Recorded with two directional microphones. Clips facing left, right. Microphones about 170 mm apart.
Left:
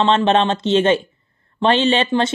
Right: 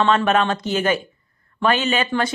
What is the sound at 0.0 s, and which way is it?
Speech, 25° left (ahead or behind).